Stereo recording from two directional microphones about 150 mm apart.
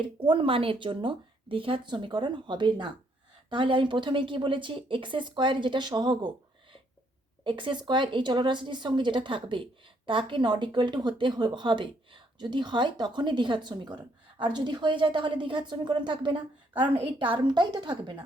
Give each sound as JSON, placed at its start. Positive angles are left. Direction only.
{"t": 0.3, "sound": "a woman's voice", "side_deg": -35}